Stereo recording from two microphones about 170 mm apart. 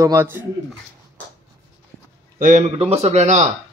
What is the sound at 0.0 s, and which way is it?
Speech, 15° right (ahead or behind).